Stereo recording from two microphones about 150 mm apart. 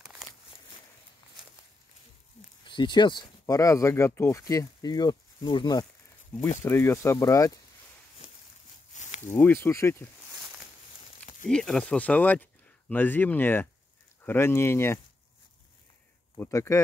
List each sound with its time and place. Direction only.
2.6 s speech: 30° left (ahead or behind)
6.6 s speech: 15° left (ahead or behind)
8.9 s a sound: 50° left (ahead or behind)
9.3 s speech: 15° left (ahead or behind)
11.4 s speech: 5° left (ahead or behind)
16.3 s speech: 20° left (ahead or behind)